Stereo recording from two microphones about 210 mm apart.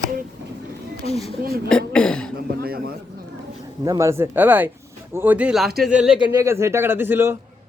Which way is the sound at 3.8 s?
15° right (ahead or behind).